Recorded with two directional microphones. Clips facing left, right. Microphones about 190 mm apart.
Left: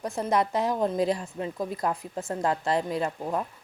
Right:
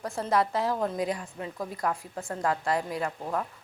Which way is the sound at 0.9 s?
30° left (ahead or behind).